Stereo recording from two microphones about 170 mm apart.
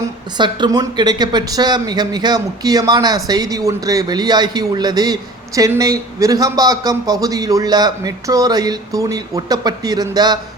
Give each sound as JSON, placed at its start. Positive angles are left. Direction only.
{"t": 0.3, "sound": "speech", "side_deg": -25}